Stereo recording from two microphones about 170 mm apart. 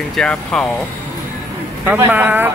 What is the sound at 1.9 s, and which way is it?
Speech, 10° right (ahead or behind).